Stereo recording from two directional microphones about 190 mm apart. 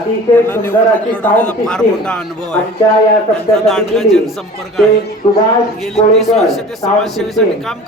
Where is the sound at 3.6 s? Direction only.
Centre (ahead or behind).